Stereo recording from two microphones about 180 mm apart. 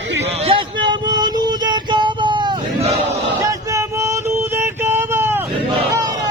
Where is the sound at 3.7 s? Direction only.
15° right (ahead or behind).